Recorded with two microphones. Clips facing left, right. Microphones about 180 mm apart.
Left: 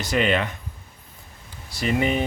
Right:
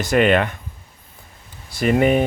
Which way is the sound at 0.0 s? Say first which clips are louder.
Right 6 dB; 55° right (ahead or behind).